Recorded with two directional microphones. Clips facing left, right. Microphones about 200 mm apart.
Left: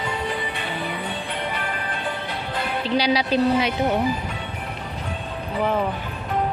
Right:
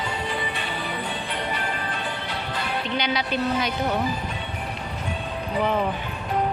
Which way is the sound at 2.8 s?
35° left (ahead or behind).